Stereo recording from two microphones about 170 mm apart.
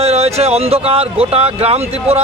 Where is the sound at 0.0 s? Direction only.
35° right (ahead or behind).